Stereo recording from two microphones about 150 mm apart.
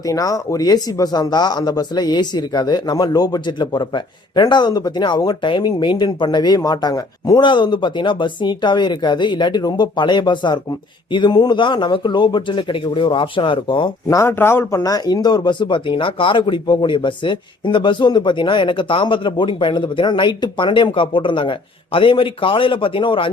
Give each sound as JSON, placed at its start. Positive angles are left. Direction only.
{"t": 0.0, "sound": "speech", "side_deg": 25}
{"t": 14.2, "sound": "speech", "side_deg": 15}